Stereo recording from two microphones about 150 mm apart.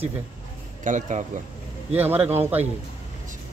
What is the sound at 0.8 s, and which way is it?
Speech, 55° right (ahead or behind).